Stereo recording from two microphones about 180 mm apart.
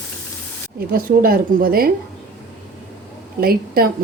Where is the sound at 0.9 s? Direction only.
55° right (ahead or behind).